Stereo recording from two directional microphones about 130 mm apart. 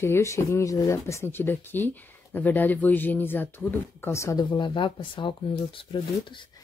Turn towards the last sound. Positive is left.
turn(degrees=40)  # may be behind; listen again after turning